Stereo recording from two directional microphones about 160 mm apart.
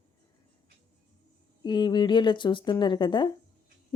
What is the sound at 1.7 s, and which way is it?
A woman's voice, 25° left (ahead or behind).